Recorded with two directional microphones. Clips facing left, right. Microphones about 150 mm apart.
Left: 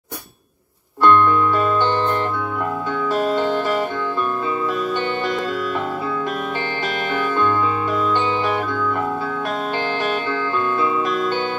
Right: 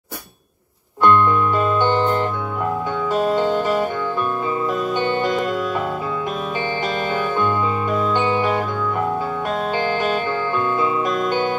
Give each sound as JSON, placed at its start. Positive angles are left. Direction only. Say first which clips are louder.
{"t": 1.0, "sound": "music", "louder": "left 1 dB", "side_deg": -15}
{"t": 7.3, "sound": "music", "louder": "left 1 dB", "side_deg": -15}